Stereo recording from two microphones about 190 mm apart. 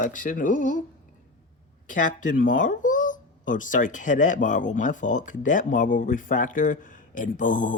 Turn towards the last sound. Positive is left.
turn(degrees=45)  # may be behind; listen again after turning